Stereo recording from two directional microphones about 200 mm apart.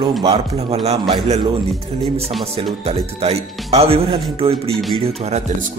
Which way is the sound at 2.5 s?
30° right (ahead or behind).